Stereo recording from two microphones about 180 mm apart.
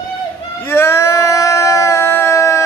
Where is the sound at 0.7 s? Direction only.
15° left (ahead or behind).